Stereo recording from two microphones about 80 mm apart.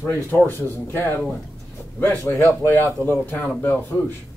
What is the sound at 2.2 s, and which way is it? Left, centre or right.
Speech, left.